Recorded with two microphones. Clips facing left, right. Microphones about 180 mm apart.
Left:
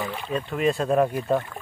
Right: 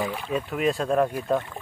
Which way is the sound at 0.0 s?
10° right (ahead or behind).